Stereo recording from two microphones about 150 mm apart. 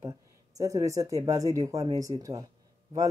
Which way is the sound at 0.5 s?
20° right (ahead or behind).